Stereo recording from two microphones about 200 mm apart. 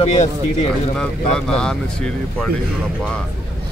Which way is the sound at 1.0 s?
5° left (ahead or behind).